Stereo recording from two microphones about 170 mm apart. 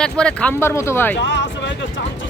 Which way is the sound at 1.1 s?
90° left.